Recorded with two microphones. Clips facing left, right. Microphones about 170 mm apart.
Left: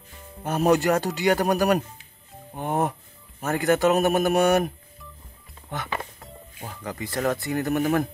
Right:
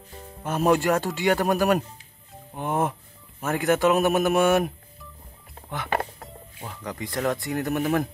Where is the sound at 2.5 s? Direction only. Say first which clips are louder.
Even; 40° left (ahead or behind).